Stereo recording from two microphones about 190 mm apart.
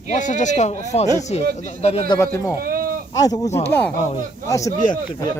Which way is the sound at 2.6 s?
50° right (ahead or behind).